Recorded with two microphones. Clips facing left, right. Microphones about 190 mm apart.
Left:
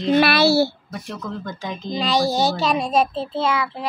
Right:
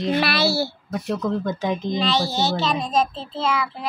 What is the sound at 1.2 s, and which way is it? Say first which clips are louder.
Speech: right 6 dB; 20° right (ahead or behind).